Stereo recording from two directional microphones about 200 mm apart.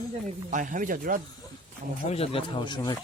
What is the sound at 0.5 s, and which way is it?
Speech, 40° right (ahead or behind).